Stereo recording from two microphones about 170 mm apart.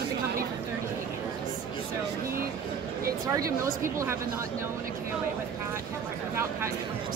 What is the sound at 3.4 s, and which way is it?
Speech, 20° right (ahead or behind).